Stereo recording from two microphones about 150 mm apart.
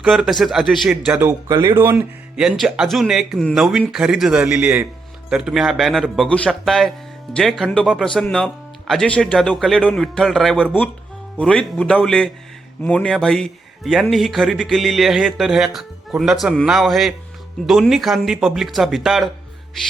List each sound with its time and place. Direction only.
0.0 s a man's voice: centre (ahead or behind)
1.1 s speech: 15° right (ahead or behind)
2.3 s a man's voice: centre (ahead or behind)